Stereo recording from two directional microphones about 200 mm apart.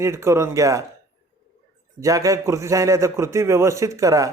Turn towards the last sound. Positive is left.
turn(degrees=-15)  # may be behind; listen again after turning